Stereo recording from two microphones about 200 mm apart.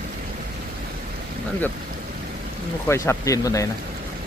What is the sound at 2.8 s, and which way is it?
Speech, 15° left (ahead or behind).